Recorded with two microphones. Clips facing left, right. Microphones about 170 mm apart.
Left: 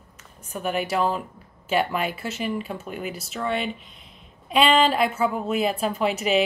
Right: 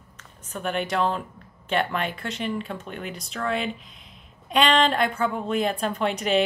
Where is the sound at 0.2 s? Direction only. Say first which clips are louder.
Left 2 dB; 10° left (ahead or behind).